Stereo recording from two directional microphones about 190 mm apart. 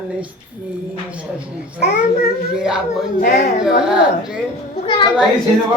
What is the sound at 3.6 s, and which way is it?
Speech, 5° right (ahead or behind).